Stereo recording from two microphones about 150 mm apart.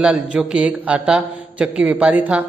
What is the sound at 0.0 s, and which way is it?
A man's voice, 5° right (ahead or behind).